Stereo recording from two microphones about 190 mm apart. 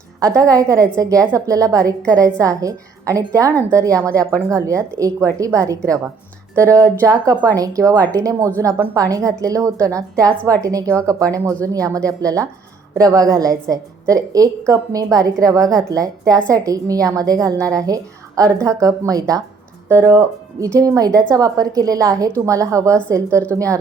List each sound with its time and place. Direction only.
0.2 s a woman's voice: 15° right (ahead or behind)
23.3 s a woman's voice: 10° left (ahead or behind)